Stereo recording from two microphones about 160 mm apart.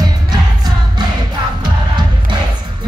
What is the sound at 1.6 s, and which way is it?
Music, 30° right (ahead or behind).